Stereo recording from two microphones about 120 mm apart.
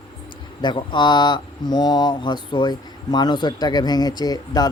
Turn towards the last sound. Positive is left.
turn(degrees=30)  # may be behind; listen again after turning